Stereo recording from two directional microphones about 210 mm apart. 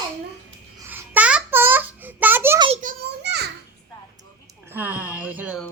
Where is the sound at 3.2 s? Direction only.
55° right (ahead or behind).